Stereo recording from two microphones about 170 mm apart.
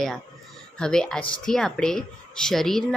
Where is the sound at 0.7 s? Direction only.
5° left (ahead or behind).